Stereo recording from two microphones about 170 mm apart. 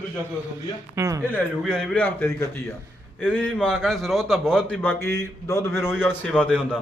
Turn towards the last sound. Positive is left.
turn(degrees=5)  # may be behind; listen again after turning